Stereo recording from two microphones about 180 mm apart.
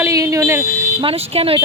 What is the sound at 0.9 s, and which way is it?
Speech, 30° right (ahead or behind).